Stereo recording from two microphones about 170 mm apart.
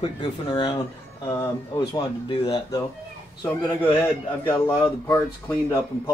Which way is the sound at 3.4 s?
10° left (ahead or behind).